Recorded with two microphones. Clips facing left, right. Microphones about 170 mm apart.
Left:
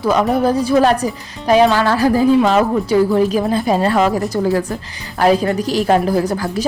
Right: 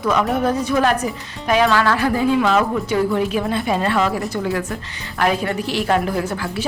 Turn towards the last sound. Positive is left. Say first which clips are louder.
# left 5 dB
turn(degrees=40)  # may be behind; listen again after turning